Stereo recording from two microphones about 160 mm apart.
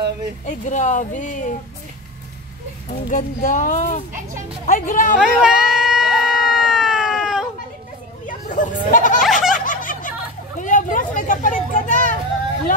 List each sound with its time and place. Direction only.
0.5 s speech: 50° left (ahead or behind)
2.9 s speech: 50° left (ahead or behind)
5.2 s a sound: centre (ahead or behind)
8.3 s goat: 55° left (ahead or behind)
9.2 s baby laughter: centre (ahead or behind)
9.7 s snicker: 55° left (ahead or behind)
10.6 s a sound: 55° left (ahead or behind)